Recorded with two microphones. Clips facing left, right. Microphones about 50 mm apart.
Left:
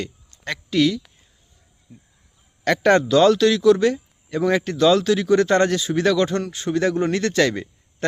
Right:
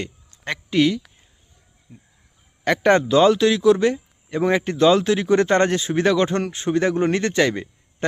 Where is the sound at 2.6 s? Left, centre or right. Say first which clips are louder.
Even; centre.